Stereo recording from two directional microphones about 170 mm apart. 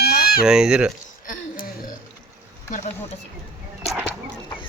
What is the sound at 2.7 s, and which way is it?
Speech, 40° left (ahead or behind).